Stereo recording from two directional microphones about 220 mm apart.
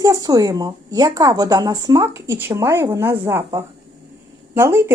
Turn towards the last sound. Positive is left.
turn(degrees=-10)  # may be behind; listen again after turning